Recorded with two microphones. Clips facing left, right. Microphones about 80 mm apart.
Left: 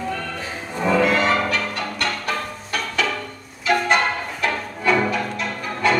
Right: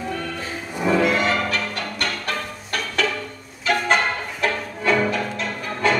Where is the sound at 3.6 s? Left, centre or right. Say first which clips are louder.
Left 1 dB; centre.